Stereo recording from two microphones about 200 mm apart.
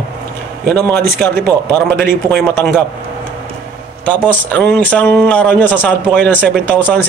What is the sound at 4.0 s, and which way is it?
Speech, 10° left (ahead or behind).